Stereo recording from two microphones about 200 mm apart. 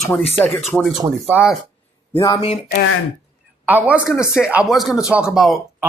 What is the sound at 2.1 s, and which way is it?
Speech, 15° left (ahead or behind).